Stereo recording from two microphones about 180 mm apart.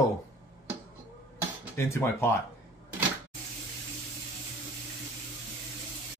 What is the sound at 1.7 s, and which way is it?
Speech, 15° left (ahead or behind).